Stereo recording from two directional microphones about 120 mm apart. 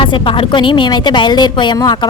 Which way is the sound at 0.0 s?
45° left (ahead or behind).